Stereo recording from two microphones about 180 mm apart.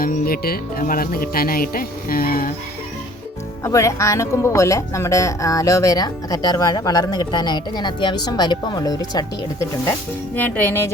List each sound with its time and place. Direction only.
0.0 s speech: 55° left (ahead or behind)
3.6 s speech: 15° left (ahead or behind)